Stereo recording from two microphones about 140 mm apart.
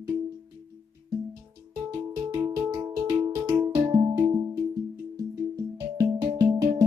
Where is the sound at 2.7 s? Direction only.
25° right (ahead or behind).